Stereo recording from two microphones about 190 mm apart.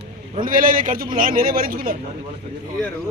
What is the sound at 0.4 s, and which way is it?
A man's voice, 45° right (ahead or behind).